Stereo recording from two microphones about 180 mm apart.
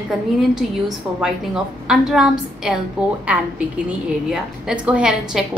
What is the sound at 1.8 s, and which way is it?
A woman's voice, 5° right (ahead or behind).